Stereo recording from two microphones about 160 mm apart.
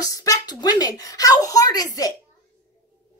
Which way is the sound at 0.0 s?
20° left (ahead or behind).